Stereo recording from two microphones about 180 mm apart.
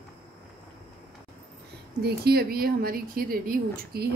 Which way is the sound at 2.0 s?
60° right (ahead or behind).